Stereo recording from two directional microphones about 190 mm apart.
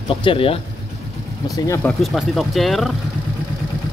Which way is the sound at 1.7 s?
10° left (ahead or behind).